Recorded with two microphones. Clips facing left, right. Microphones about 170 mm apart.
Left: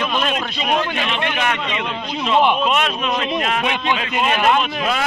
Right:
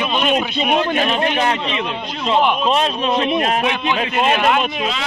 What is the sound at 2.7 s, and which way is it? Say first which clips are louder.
Speech: right 3 dB; 30° right (ahead or behind).